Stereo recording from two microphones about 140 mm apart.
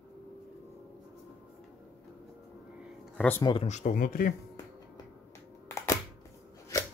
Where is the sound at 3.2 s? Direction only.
15° left (ahead or behind).